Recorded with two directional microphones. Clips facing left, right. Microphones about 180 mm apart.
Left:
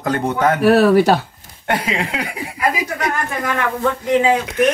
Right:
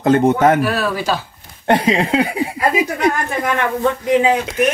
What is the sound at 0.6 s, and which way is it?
Speech, 65° left (ahead or behind).